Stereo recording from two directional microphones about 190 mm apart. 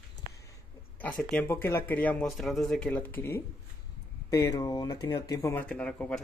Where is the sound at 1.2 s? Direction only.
5° left (ahead or behind).